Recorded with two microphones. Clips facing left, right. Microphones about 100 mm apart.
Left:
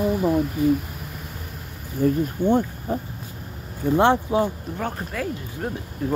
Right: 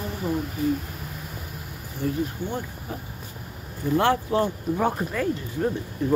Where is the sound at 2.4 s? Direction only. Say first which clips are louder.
Left 11 dB; 50° left (ahead or behind).